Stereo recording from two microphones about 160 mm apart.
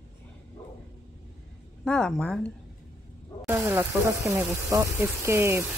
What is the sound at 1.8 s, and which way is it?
Speech, 5° left (ahead or behind).